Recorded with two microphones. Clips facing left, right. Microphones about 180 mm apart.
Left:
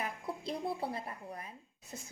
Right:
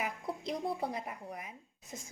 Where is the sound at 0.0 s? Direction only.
15° right (ahead or behind).